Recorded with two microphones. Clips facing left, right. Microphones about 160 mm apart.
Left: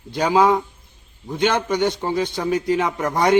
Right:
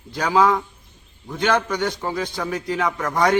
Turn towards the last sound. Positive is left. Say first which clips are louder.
# left 1 dB
turn(degrees=20)  # may be behind; listen again after turning